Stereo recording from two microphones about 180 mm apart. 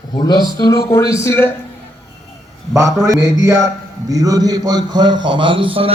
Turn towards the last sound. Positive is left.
turn(degrees=-30)  # may be behind; listen again after turning